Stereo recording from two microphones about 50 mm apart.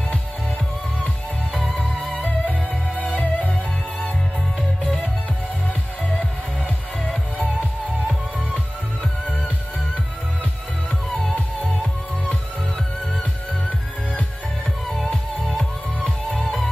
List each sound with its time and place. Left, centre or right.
1.5 s music: centre
2.9 s music: left
4.6 s music: centre